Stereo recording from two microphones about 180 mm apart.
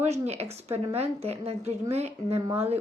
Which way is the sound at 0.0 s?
35° right (ahead or behind).